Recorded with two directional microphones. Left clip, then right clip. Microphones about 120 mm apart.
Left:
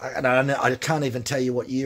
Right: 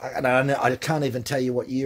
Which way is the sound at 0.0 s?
20° right (ahead or behind).